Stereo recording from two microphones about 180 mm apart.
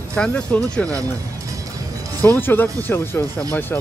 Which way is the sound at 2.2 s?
10° left (ahead or behind).